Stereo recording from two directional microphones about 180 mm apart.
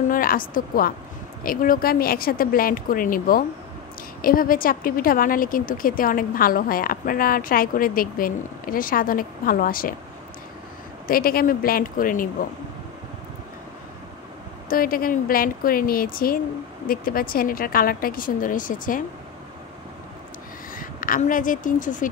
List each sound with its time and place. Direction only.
0.1 s a woman's voice: 50° left (ahead or behind)
11.1 s a woman's voice: 55° left (ahead or behind)
14.7 s a woman's voice: 50° left (ahead or behind)
20.7 s speech: 50° left (ahead or behind)